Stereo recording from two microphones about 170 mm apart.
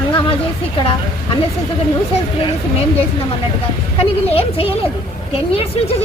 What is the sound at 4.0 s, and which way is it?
Speech, 35° left (ahead or behind).